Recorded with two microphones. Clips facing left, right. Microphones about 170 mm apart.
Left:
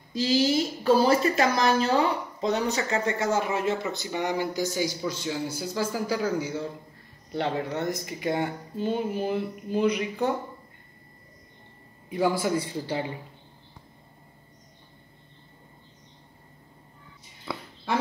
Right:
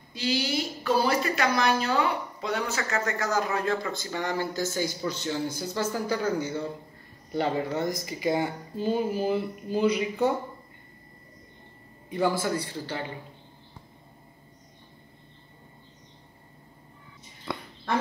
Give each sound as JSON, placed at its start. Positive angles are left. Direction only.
{"t": 0.1, "sound": "speech", "side_deg": 35}
{"t": 12.1, "sound": "speech", "side_deg": 10}
{"t": 17.5, "sound": "a sound", "side_deg": 5}